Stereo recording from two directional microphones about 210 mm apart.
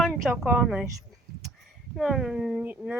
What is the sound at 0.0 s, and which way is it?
Speech, centre (ahead or behind).